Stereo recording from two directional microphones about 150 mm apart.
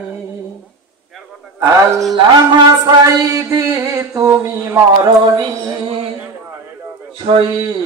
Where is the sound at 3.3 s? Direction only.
20° right (ahead or behind).